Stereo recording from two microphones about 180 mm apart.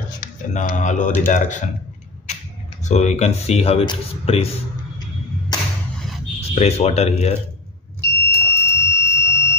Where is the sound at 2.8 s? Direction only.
40° left (ahead or behind).